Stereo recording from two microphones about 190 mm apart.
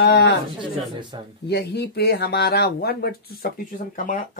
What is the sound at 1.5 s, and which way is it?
Speech, 60° left (ahead or behind).